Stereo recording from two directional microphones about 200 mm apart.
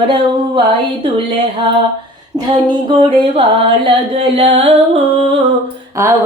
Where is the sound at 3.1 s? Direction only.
25° right (ahead or behind).